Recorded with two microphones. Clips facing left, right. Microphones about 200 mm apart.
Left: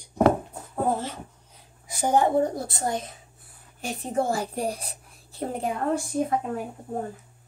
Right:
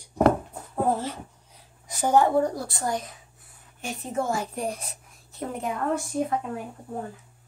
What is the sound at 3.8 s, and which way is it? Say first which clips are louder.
A woman's voice: left 3 dB; 35° left (ahead or behind).